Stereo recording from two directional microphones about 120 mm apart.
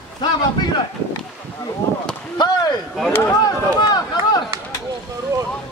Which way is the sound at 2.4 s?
35° left (ahead or behind).